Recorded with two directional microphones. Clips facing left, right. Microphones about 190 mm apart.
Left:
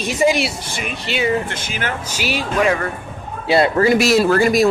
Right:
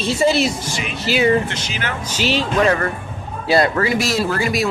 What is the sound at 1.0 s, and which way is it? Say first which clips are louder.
Speech: right 4 dB; centre (ahead or behind).